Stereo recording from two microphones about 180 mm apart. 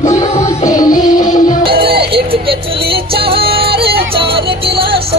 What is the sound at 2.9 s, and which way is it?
Music, 30° right (ahead or behind).